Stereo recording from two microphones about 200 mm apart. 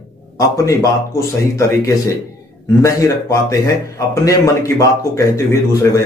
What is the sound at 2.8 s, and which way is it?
A man's voice, 15° left (ahead or behind).